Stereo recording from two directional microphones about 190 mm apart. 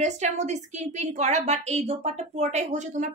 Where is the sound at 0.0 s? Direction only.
40° right (ahead or behind).